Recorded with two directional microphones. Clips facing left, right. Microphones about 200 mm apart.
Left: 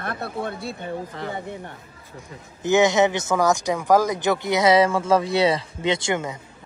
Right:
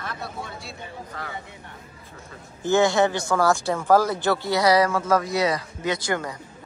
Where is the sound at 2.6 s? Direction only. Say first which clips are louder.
Left 2 dB; 20° left (ahead or behind).